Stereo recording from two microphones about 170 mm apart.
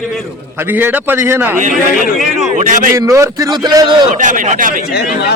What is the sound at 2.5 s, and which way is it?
Speech, 50° right (ahead or behind).